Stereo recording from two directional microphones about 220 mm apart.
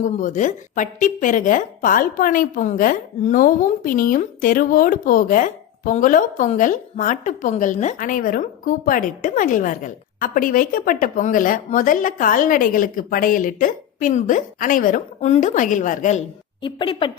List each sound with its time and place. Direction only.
0.0 s a woman's voice: 35° left (ahead or behind)
16.6 s a woman's voice: 20° left (ahead or behind)